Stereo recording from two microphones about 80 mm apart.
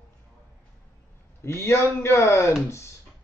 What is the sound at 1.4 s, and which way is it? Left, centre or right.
Speech, left.